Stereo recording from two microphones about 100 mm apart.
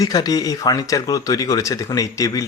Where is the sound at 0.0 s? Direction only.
40° left (ahead or behind).